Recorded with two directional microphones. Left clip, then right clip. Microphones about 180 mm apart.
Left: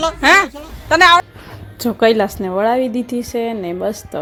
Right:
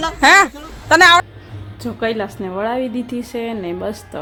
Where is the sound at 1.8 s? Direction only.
35° left (ahead or behind).